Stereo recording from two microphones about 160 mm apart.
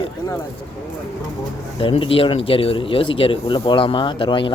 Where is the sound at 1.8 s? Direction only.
35° left (ahead or behind).